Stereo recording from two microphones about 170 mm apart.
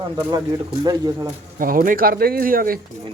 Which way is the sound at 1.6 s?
55° right (ahead or behind).